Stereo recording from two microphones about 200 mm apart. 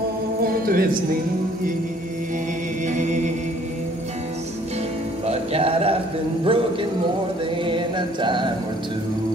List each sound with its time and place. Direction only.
0.5 s music: 45° right (ahead or behind)
2.9 s music: 35° right (ahead or behind)
5.2 s music: 30° right (ahead or behind)
6.4 s speech: 25° right (ahead or behind)
7.6 s chant: 25° right (ahead or behind)